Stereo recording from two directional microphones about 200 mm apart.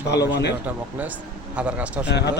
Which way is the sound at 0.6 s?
10° right (ahead or behind).